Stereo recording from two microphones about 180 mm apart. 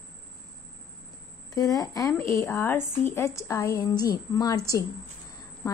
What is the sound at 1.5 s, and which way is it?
A woman's voice, 20° left (ahead or behind).